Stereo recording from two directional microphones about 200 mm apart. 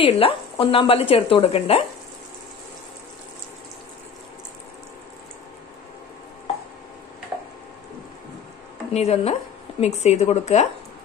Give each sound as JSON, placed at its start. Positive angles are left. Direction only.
{"t": 0.0, "sound": "speech", "side_deg": 25}
{"t": 8.9, "sound": "a woman's voice", "side_deg": 30}